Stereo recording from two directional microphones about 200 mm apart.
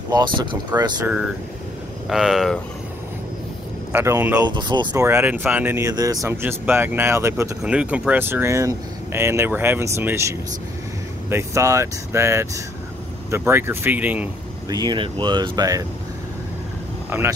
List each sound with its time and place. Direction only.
0.1 s speech: 20° right (ahead or behind)
2.0 s speech: centre (ahead or behind)
3.9 s speech: 10° right (ahead or behind)
4.6 s speech: 20° right (ahead or behind)
14.7 s speech: 20° right (ahead or behind)
17.1 s speech: 10° right (ahead or behind)